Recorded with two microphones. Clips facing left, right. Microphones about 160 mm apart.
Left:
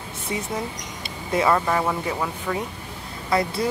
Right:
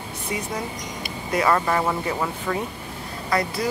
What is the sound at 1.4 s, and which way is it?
Speech, centre (ahead or behind).